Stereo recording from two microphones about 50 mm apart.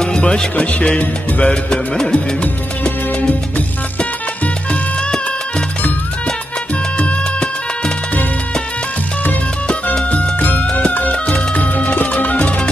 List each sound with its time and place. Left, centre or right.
0.0 s music: centre
2.1 s music: left
7.0 s music: left
10.4 s music: left